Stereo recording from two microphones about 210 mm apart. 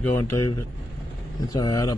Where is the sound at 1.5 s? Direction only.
20° left (ahead or behind).